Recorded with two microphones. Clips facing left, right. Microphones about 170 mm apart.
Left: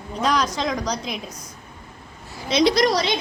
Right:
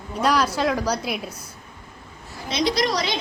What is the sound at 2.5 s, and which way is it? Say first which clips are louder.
Speech: left 5 dB; 90° left.